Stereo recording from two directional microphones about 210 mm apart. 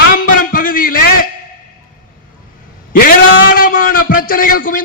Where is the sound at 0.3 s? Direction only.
40° left (ahead or behind).